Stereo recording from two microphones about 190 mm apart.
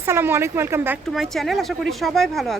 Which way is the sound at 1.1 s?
Centre (ahead or behind).